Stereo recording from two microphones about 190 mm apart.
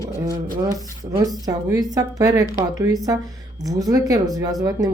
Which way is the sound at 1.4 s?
20° right (ahead or behind).